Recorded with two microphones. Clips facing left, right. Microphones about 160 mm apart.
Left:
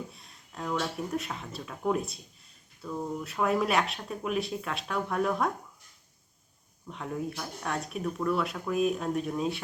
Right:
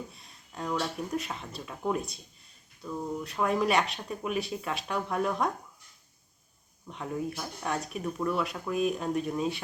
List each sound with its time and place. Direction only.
0.1 s speech: centre (ahead or behind)
6.8 s speech: 5° right (ahead or behind)